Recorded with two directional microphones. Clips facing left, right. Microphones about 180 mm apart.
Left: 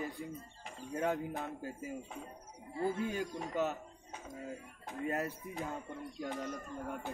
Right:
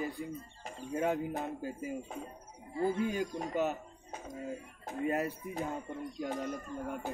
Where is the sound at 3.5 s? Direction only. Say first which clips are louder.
Right 2 dB; 15° right (ahead or behind).